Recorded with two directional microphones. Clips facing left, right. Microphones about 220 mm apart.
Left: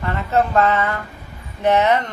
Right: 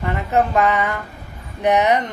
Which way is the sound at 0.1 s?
15° right (ahead or behind).